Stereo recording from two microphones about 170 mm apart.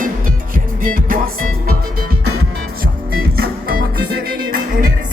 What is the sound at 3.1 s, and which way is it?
Music, 60° right (ahead or behind).